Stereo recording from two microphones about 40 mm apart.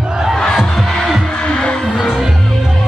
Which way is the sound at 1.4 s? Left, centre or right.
Left.